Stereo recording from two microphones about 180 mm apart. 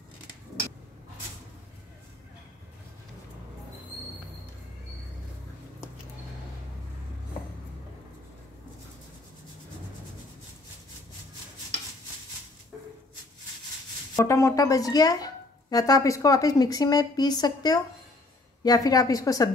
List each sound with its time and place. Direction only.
14.1 s speech: 15° left (ahead or behind)